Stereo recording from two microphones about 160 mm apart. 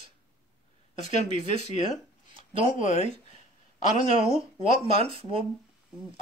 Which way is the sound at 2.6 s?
50° left (ahead or behind).